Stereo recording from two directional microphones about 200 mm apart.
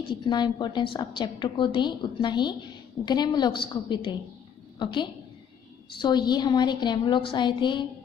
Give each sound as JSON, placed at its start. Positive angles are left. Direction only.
{"t": 0.1, "sound": "a woman's voice", "side_deg": 20}